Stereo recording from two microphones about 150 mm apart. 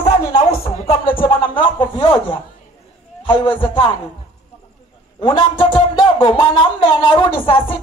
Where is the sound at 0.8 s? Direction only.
35° left (ahead or behind).